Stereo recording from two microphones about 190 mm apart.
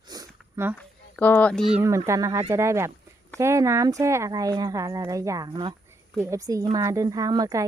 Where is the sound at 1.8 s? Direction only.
15° right (ahead or behind).